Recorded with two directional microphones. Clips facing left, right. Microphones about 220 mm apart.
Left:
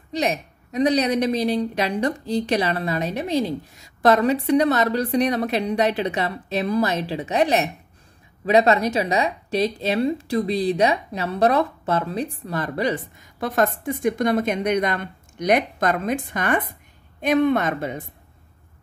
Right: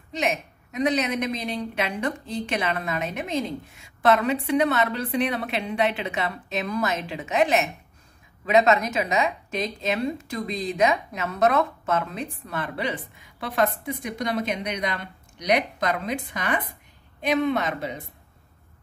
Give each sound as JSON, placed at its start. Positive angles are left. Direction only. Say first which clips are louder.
{"t": 0.1, "sound": "a woman's voice", "louder": "left 3 dB", "side_deg": 35}